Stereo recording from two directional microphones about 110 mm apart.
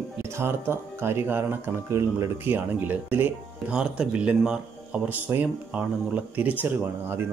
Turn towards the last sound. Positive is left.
turn(degrees=-20)  # may be behind; listen again after turning